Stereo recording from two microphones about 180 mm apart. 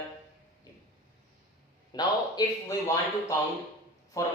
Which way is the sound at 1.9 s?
20° left (ahead or behind).